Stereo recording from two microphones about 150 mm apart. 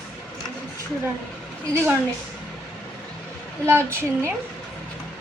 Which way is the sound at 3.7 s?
15° right (ahead or behind).